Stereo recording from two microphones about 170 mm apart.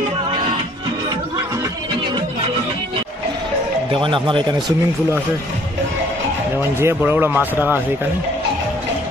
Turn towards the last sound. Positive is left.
turn(degrees=-10)  # may be behind; listen again after turning